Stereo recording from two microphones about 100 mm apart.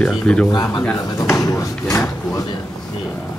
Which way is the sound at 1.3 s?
30° left (ahead or behind).